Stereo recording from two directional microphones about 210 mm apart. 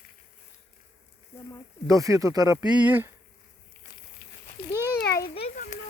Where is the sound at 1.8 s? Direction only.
15° right (ahead or behind).